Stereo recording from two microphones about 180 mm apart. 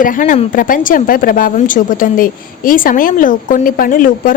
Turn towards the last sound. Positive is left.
turn(degrees=50)  # may be behind; listen again after turning